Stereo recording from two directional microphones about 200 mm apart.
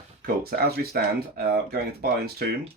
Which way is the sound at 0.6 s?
50° right (ahead or behind).